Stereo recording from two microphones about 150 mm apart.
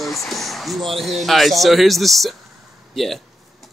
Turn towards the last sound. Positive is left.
turn(degrees=0)  # may be behind; listen again after turning